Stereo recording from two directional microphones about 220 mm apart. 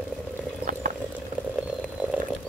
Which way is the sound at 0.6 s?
40° right (ahead or behind).